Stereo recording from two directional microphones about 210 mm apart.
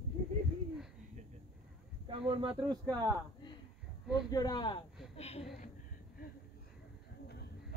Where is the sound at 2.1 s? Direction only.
25° right (ahead or behind).